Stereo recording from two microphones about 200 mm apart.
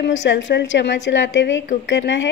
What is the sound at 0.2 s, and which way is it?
A woman's voice, 65° left (ahead or behind).